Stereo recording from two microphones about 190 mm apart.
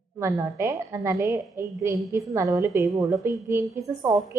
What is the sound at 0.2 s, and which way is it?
A woman's voice, 15° right (ahead or behind).